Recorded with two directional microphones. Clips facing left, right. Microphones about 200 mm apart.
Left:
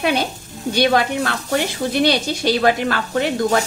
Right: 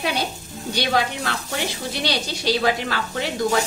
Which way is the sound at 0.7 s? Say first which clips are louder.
Left 6 dB; 55° left (ahead or behind).